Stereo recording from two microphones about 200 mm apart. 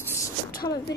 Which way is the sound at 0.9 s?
60° left (ahead or behind).